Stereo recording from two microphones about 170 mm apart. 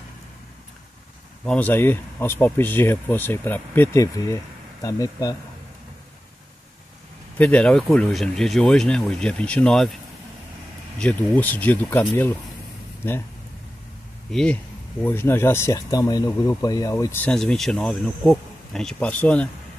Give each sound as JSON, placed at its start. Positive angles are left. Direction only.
{"t": 1.4, "sound": "speech", "side_deg": 5}
{"t": 7.3, "sound": "speech", "side_deg": 10}
{"t": 11.0, "sound": "speech", "side_deg": 10}
{"t": 14.3, "sound": "speech", "side_deg": 5}